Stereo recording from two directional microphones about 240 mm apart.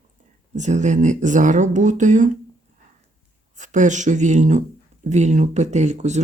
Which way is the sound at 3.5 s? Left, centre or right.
Right.